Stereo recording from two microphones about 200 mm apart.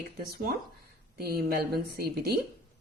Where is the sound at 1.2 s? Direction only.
50° right (ahead or behind).